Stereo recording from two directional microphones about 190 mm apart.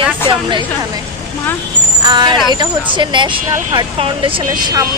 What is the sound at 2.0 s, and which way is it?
Speech, 25° right (ahead or behind).